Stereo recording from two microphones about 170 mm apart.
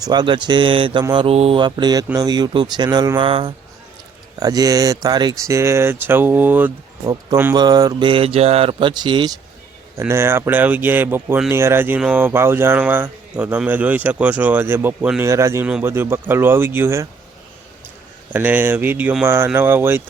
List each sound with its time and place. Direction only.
0.0 s speech: 25° right (ahead or behind)
4.4 s speech: 20° right (ahead or behind)
7.0 s speech: 20° right (ahead or behind)
9.9 s speech: 15° right (ahead or behind)
18.3 s speech: 10° right (ahead or behind)